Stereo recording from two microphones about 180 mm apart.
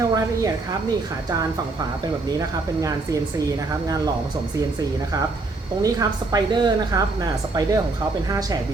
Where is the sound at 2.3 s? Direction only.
20° right (ahead or behind).